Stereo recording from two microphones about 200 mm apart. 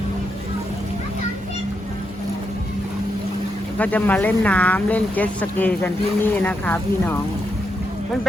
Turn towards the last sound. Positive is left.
turn(degrees=10)  # may be behind; listen again after turning